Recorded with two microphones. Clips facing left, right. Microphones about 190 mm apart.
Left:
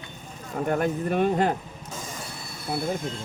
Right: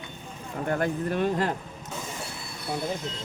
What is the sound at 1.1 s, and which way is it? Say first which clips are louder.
Speech: left 5 dB; 60° left (ahead or behind).